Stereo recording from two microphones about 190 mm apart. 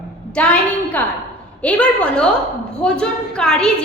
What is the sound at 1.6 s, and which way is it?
A woman's voice, 5° left (ahead or behind).